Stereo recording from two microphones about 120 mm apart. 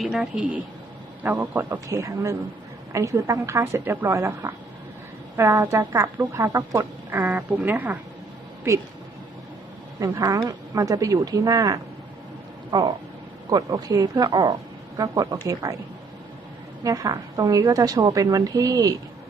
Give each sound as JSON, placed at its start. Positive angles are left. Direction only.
{"t": 0.0, "sound": "a woman's voice", "side_deg": -5}
{"t": 8.7, "sound": "speech", "side_deg": -25}
{"t": 10.0, "sound": "a woman's voice", "side_deg": -30}
{"t": 16.8, "sound": "a woman's voice", "side_deg": -30}